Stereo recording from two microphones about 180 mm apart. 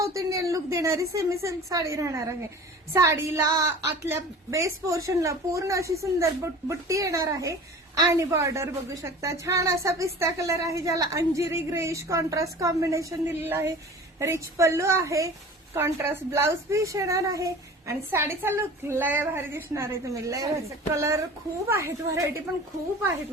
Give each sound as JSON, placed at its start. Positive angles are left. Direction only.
{"t": 0.0, "sound": "a woman's voice", "side_deg": -20}